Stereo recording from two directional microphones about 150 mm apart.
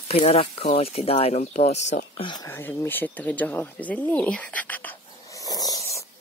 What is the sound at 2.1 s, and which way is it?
Speech, 35° left (ahead or behind).